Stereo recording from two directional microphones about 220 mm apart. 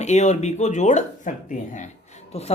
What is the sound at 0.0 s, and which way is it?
Speech, 30° left (ahead or behind).